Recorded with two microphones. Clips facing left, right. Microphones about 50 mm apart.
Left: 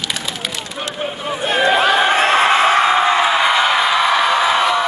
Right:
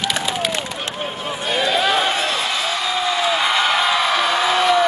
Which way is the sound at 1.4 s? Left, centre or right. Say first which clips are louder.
Left 5 dB; left.